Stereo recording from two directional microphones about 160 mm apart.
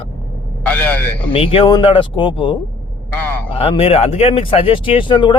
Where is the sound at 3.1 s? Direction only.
10° left (ahead or behind).